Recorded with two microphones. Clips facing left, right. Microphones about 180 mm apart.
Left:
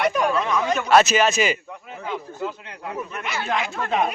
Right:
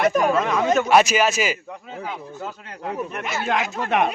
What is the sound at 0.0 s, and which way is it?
Speech, 45° right (ahead or behind).